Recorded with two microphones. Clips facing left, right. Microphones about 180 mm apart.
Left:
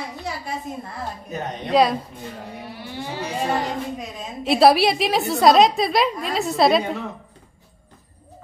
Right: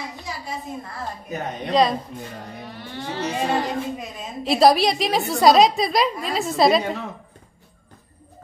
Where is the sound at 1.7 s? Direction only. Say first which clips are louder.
Left 1 dB; 5° left (ahead or behind).